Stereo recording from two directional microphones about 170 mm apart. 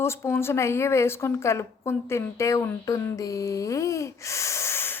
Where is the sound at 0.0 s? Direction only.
15° left (ahead or behind).